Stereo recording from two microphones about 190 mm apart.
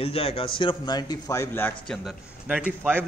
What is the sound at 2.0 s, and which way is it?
A man's voice, 5° right (ahead or behind).